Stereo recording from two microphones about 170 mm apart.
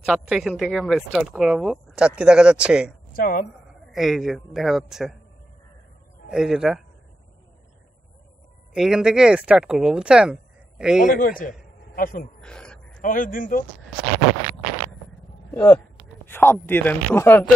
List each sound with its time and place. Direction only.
0.0 s speech: centre (ahead or behind)
3.1 s a woman's voice: 55° left (ahead or behind)
3.9 s speech: centre (ahead or behind)
6.3 s speech: 5° right (ahead or behind)
8.7 s speech: 5° right (ahead or behind)
11.1 s a man's voice: 55° left (ahead or behind)
12.4 s a sound: 5° left (ahead or behind)
13.0 s speech: 50° left (ahead or behind)
15.5 s speech: 10° left (ahead or behind)